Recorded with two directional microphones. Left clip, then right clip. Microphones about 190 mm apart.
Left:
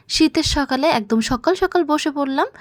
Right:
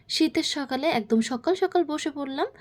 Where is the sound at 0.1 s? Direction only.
30° left (ahead or behind).